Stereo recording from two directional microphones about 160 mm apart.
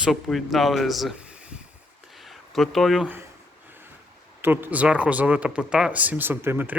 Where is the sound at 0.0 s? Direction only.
Centre (ahead or behind).